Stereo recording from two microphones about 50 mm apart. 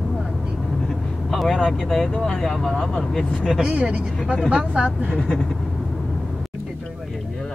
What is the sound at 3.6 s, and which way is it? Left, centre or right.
Speech, right.